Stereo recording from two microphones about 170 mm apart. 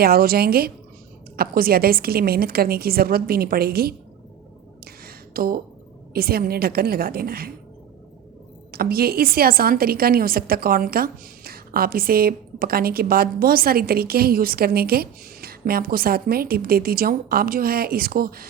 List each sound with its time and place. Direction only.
0.0 s a woman's voice: 65° right (ahead or behind)
5.0 s a sound: 60° right (ahead or behind)
6.1 s a woman's voice: 60° right (ahead or behind)
8.7 s a woman's voice: 65° right (ahead or behind)